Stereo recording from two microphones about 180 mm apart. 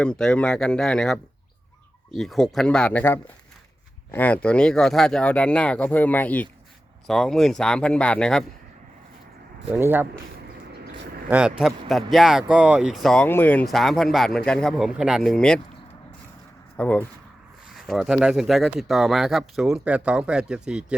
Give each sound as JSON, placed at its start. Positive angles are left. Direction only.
{"t": 0.0, "sound": "speech", "side_deg": 5}
{"t": 9.7, "sound": "speech", "side_deg": -10}
{"t": 11.3, "sound": "speech", "side_deg": -5}
{"t": 16.7, "sound": "speech", "side_deg": 10}